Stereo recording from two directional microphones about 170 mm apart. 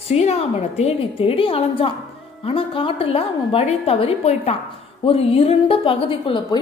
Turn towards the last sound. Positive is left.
turn(degrees=30)  # may be behind; listen again after turning